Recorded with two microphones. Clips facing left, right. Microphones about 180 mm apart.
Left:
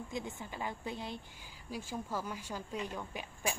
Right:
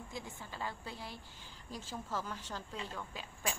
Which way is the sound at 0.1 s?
20° left (ahead or behind).